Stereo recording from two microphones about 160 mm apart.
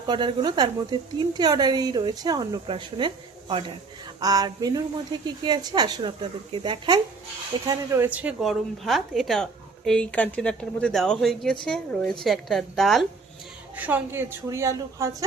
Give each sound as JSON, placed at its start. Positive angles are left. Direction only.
{"t": 0.1, "sound": "a woman's voice", "side_deg": -25}
{"t": 4.2, "sound": "a woman's voice", "side_deg": -25}
{"t": 13.7, "sound": "a woman's voice", "side_deg": -10}